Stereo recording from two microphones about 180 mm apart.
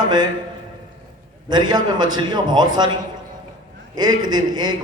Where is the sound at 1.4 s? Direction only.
25° right (ahead or behind).